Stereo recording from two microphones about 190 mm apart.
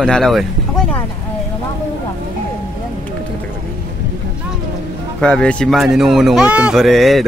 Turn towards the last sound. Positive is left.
turn(degrees=0)  # may be behind; listen again after turning